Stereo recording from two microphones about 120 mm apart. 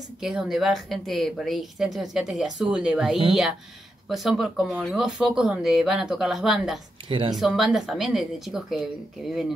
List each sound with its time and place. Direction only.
0.2 s a woman's voice: 5° right (ahead or behind)
7.1 s speech: 45° right (ahead or behind)
7.3 s a woman's voice: centre (ahead or behind)